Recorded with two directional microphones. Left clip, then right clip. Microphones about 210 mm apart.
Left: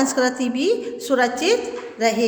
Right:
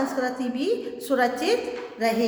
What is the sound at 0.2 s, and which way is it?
A woman's voice, 35° left (ahead or behind).